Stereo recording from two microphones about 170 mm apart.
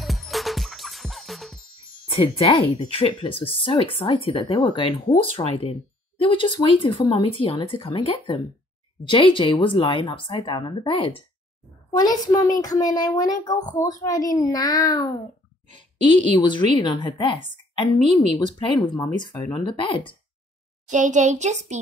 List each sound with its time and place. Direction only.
0.0 s music: centre (ahead or behind)
2.0 s speech: 30° left (ahead or behind)
18.4 s speech: 25° left (ahead or behind)
19.6 s speech: 30° left (ahead or behind)
20.9 s a child's voice: 45° right (ahead or behind)